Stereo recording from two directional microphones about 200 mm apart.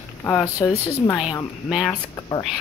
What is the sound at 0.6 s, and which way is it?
Speech, 5° left (ahead or behind).